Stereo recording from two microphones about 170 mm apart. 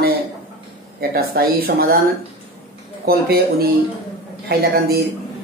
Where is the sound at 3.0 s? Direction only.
65° right (ahead or behind).